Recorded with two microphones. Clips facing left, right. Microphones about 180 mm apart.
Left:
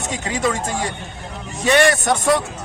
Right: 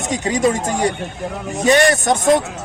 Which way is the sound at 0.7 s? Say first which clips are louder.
Right 6 dB; 40° right (ahead or behind).